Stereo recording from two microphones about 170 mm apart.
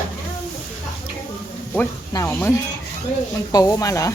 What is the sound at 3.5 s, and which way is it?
Speech, 20° left (ahead or behind).